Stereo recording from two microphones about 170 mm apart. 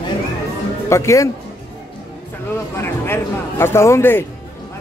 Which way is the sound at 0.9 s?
15° left (ahead or behind).